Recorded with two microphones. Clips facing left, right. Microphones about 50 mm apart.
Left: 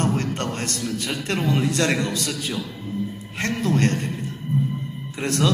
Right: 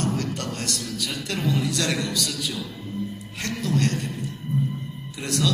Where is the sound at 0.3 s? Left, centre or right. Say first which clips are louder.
Left 3 dB; left.